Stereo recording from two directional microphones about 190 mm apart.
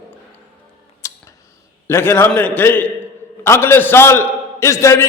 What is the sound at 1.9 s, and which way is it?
A man's voice, 10° left (ahead or behind).